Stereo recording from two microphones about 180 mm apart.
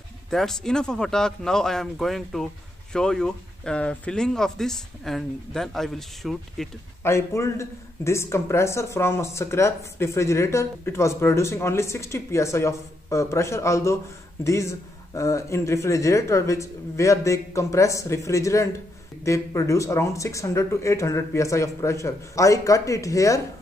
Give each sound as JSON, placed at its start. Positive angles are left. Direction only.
{"t": 0.3, "sound": "speech", "side_deg": 0}
{"t": 7.0, "sound": "speech", "side_deg": 15}